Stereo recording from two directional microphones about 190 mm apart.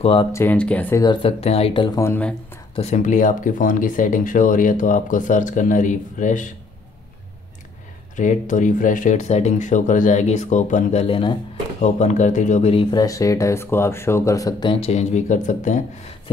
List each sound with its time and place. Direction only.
0.0 s speech: 25° left (ahead or behind)
0.3 s speech: 10° left (ahead or behind)
1.0 s speech: 25° left (ahead or behind)
1.9 s speech: 15° left (ahead or behind)
2.7 s speech: 35° left (ahead or behind)
8.2 s speech: 40° left (ahead or behind)
12.9 s speech: 15° left (ahead or behind); by 15.8 s 40° left (ahead or behind)